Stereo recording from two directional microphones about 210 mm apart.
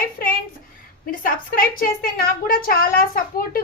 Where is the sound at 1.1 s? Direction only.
40° left (ahead or behind).